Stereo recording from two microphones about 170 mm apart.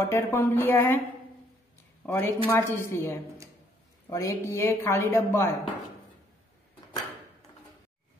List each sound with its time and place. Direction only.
0.0 s speech: 15° left (ahead or behind)
2.0 s speech: 15° left (ahead or behind)